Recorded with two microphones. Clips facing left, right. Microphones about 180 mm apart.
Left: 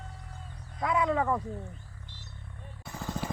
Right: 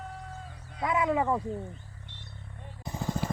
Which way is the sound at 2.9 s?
15° right (ahead or behind).